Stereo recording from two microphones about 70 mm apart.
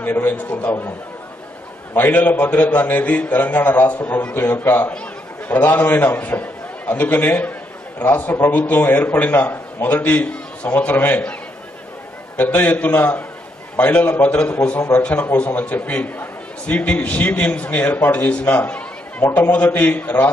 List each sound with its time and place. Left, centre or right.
0.0 s a man's voice: left
2.0 s a man's voice: left
12.4 s a man's voice: left